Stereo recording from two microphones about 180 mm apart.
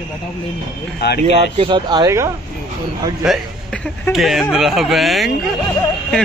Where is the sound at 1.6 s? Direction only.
25° right (ahead or behind).